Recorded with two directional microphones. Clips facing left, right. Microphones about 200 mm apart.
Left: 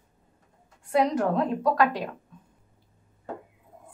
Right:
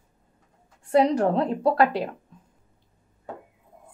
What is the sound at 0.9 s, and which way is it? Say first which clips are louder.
A woman's voice: right 3 dB; 35° right (ahead or behind).